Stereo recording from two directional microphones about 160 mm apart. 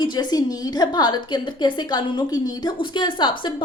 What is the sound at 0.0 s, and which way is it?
A woman's voice, 25° left (ahead or behind).